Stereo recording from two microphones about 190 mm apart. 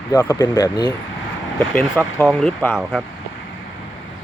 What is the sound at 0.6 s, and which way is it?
Speech, 25° left (ahead or behind).